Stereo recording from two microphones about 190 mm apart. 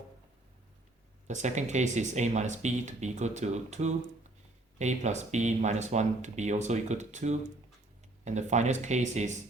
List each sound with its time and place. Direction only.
1.3 s speech: 40° right (ahead or behind)